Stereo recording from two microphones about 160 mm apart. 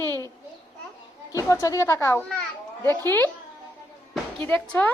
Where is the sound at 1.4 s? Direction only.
20° left (ahead or behind).